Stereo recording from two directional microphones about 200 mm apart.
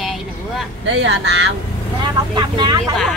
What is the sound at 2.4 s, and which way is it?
Speech, 20° right (ahead or behind).